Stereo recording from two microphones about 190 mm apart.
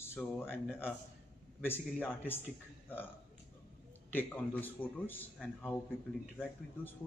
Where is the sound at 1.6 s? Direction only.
10° left (ahead or behind).